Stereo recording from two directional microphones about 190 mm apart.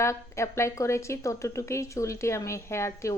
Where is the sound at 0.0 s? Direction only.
15° left (ahead or behind).